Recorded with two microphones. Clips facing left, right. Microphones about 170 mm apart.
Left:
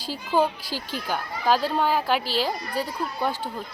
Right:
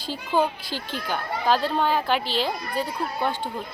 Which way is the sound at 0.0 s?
10° left (ahead or behind).